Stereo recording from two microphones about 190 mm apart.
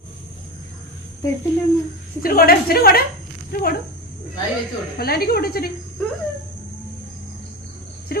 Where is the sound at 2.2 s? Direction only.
50° left (ahead or behind).